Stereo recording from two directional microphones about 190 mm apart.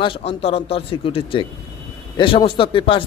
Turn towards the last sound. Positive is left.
turn(degrees=25)  # may be behind; listen again after turning